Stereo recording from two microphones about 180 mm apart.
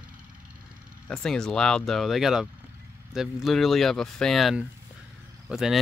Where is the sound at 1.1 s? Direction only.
5° left (ahead or behind).